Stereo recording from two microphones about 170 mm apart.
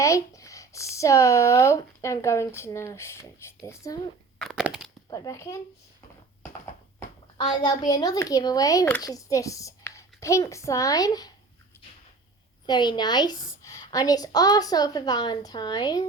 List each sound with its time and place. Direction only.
0.0 s speech: 20° left (ahead or behind)
4.4 s a sound: centre (ahead or behind)
5.1 s a woman's voice: 20° left (ahead or behind)
7.6 s a woman's voice: 25° left (ahead or behind)
12.6 s a woman's voice: 25° left (ahead or behind)